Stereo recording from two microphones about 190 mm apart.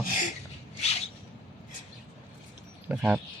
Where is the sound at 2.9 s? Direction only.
5° right (ahead or behind).